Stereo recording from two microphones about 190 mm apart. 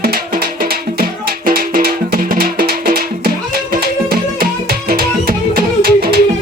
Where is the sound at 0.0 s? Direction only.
50° right (ahead or behind).